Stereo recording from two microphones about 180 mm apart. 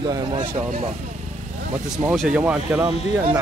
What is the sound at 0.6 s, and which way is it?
Speech, 40° right (ahead or behind).